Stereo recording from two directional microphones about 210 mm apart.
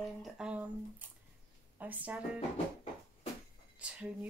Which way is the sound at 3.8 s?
5° right (ahead or behind).